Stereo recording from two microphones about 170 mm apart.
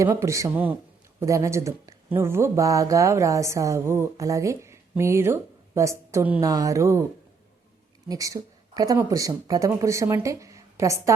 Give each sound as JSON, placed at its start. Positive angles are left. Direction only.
{"t": 0.0, "sound": "speech", "side_deg": -15}
{"t": 8.0, "sound": "speech", "side_deg": -20}